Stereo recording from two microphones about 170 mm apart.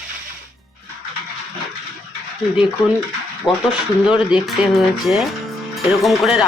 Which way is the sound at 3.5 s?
25° left (ahead or behind).